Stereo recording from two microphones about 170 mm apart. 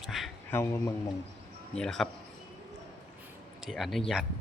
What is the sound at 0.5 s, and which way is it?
Speech, 15° left (ahead or behind).